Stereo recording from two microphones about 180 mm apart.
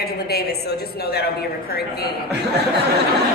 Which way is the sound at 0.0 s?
60° left (ahead or behind).